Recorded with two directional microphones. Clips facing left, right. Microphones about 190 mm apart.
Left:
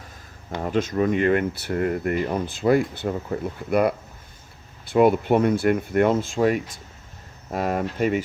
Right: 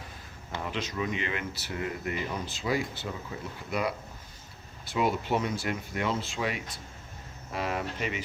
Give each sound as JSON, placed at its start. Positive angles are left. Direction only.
{"t": 0.6, "sound": "speech", "side_deg": 50}